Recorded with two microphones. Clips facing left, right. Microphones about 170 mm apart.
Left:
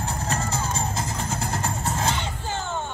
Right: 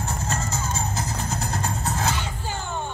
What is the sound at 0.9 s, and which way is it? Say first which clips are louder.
Vehicle: even; 25° left (ahead or behind).